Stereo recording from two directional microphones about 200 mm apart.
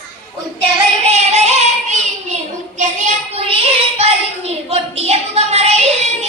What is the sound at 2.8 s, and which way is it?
Child singing, 35° right (ahead or behind).